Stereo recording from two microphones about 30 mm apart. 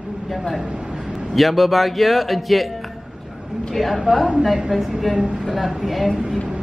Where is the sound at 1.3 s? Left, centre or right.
Centre.